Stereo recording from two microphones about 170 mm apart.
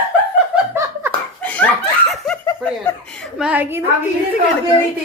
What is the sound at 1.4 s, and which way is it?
Laughter, 10° left (ahead or behind).